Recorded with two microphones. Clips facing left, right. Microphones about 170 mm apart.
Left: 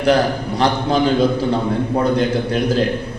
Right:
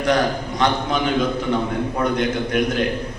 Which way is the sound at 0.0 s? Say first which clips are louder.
Left 4 dB; 30° left (ahead or behind).